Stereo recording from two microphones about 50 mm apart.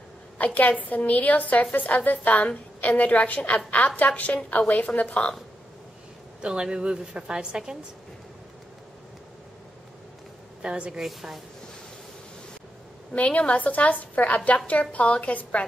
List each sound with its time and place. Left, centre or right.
0.6 s a woman's voice: left
6.4 s a woman's voice: centre
10.6 s a woman's voice: centre
11.0 s a woman's voice: centre
13.1 s a woman's voice: left